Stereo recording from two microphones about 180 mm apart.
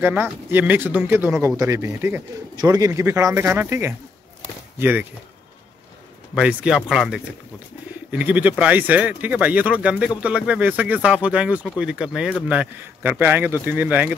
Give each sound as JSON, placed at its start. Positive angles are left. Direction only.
{"t": 0.0, "sound": "speech", "side_deg": -10}
{"t": 6.3, "sound": "speech", "side_deg": -5}